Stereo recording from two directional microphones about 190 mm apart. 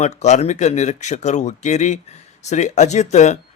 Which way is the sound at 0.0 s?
35° left (ahead or behind).